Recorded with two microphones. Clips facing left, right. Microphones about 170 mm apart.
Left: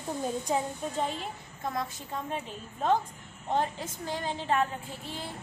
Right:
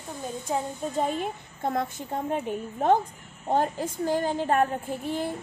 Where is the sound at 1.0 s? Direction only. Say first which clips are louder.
Right 6 dB; 55° right (ahead or behind).